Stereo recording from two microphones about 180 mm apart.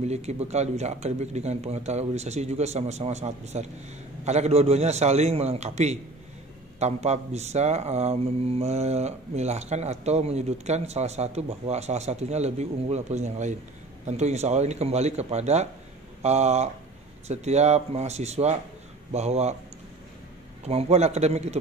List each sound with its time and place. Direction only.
0.0 s speech: 40° right (ahead or behind)
20.6 s speech: 35° right (ahead or behind)